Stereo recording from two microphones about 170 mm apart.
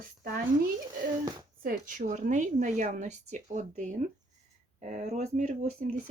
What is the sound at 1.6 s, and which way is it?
A woman's voice, 50° right (ahead or behind).